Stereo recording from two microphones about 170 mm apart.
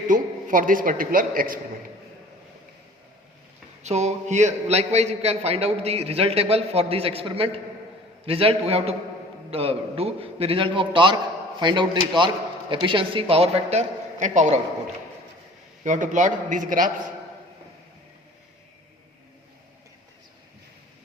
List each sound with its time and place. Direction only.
0.1 s a man's voice: 50° right (ahead or behind)
3.8 s a man's voice: 40° right (ahead or behind)
15.8 s a man's voice: 45° right (ahead or behind)